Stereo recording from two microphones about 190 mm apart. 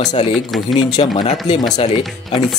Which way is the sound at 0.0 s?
40° left (ahead or behind).